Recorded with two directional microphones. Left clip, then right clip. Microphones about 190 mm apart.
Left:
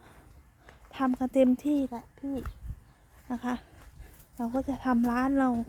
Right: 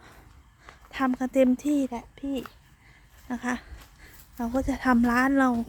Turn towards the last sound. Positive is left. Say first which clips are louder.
# right 5 dB
turn(degrees=-10)  # may be behind; listen again after turning